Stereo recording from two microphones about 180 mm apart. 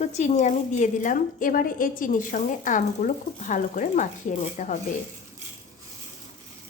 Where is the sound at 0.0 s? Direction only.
40° left (ahead or behind).